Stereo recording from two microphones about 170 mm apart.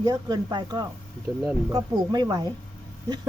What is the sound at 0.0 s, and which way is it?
Speech, 20° right (ahead or behind).